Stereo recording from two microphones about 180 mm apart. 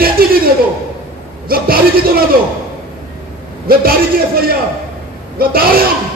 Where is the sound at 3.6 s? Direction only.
55° right (ahead or behind).